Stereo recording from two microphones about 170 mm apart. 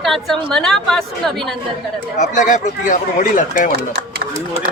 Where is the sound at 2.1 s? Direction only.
45° left (ahead or behind).